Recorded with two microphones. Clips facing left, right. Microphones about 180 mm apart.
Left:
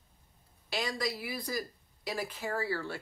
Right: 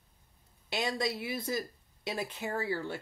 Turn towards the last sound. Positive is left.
turn(degrees=-20)  # may be behind; listen again after turning